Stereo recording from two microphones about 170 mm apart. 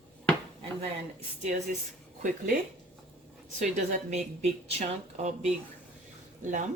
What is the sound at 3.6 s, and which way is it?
A woman's voice, 40° right (ahead or behind).